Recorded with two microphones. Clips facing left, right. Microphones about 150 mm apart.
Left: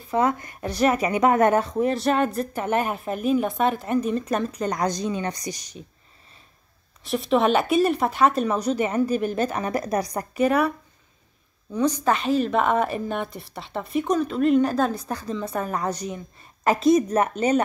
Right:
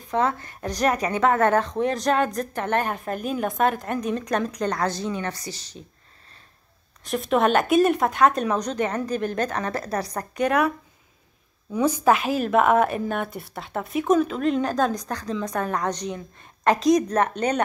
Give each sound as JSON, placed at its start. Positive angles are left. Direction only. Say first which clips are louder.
{"t": 0.1, "sound": "a woman's voice", "louder": "left 1 dB", "side_deg": 10}
{"t": 7.1, "sound": "a woman's voice", "louder": "left 1 dB", "side_deg": 0}
{"t": 11.7, "sound": "a woman's voice", "louder": "right 2 dB", "side_deg": -10}